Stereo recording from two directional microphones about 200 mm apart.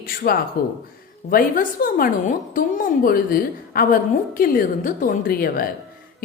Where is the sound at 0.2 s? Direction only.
50° left (ahead or behind).